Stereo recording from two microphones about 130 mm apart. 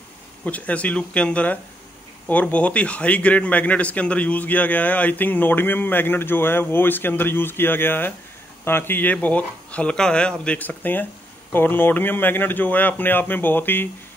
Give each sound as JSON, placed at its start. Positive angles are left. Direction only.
{"t": 0.5, "sound": "a man's voice", "side_deg": 10}